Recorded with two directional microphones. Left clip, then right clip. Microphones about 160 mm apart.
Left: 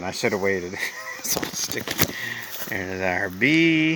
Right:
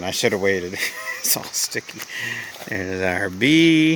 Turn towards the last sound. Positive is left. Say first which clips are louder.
# right 3 dB
turn(degrees=-45)  # may be behind; listen again after turning